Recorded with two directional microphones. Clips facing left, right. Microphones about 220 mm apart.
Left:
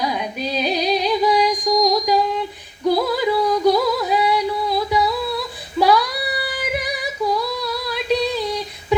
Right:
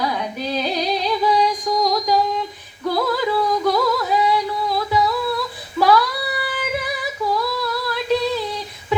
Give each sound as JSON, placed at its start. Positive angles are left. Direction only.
{"t": 0.0, "sound": "music", "side_deg": 15}
{"t": 2.8, "sound": "a sound", "side_deg": 15}
{"t": 5.8, "sound": "female singing", "side_deg": 15}